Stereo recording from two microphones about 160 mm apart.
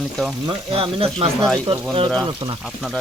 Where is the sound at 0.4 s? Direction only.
35° right (ahead or behind).